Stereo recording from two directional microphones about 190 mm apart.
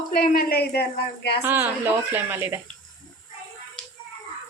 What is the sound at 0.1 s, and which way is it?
Speech, 50° left (ahead or behind).